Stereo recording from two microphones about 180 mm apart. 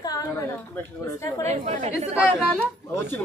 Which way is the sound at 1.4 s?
35° right (ahead or behind).